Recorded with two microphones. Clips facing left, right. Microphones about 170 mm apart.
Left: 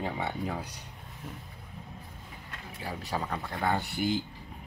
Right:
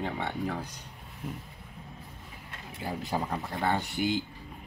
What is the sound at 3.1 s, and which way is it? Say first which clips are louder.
Speech: right 2 dB; 15° right (ahead or behind).